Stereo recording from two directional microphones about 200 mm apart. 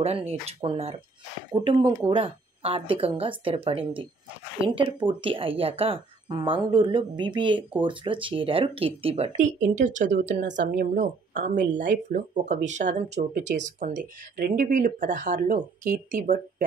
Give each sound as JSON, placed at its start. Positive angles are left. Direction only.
{"t": 0.3, "sound": "a woman's voice", "side_deg": -30}